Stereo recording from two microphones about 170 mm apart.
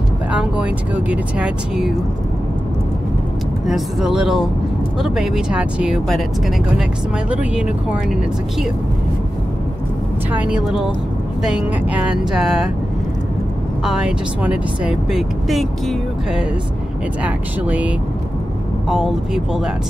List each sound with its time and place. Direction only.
0.3 s speech: 5° right (ahead or behind)
3.6 s speech: centre (ahead or behind)
7.2 s speech: 5° right (ahead or behind)
10.3 s speech: 5° right (ahead or behind)
13.8 s speech: 5° right (ahead or behind)